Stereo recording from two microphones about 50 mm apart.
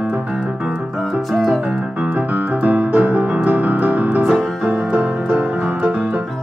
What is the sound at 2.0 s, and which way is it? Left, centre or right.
Keyboard, right.